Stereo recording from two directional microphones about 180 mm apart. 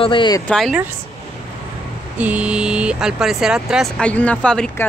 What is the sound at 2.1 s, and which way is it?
Speech, 10° right (ahead or behind).